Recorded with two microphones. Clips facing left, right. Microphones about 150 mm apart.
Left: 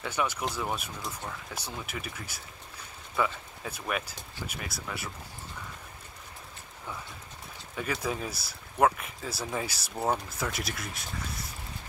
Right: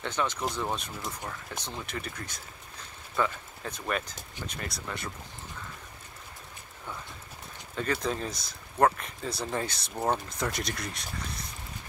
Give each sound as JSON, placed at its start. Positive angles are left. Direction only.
{"t": 0.0, "sound": "speech", "side_deg": 10}
{"t": 7.7, "sound": "speech", "side_deg": 10}